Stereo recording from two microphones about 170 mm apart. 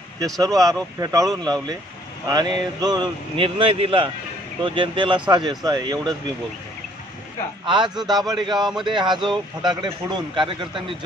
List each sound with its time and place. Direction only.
0.2 s a man's voice: 20° right (ahead or behind)
7.6 s a man's voice: 25° right (ahead or behind)